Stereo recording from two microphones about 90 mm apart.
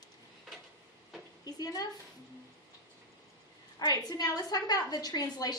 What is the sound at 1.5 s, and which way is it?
Speech, 45° left (ahead or behind).